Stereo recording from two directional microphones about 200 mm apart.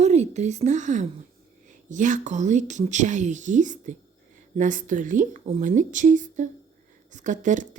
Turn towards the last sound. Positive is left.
turn(degrees=-40)  # may be behind; listen again after turning